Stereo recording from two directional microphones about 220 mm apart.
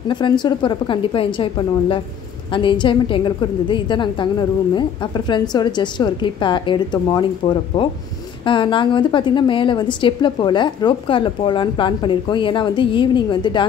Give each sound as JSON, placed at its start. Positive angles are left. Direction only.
{"t": 0.1, "sound": "a woman's voice", "side_deg": 20}